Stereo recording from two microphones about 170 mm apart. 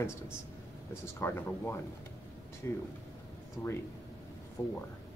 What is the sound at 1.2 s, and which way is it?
Speech, 15° left (ahead or behind).